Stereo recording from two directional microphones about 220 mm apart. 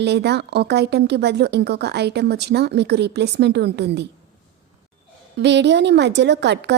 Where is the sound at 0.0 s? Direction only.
50° right (ahead or behind).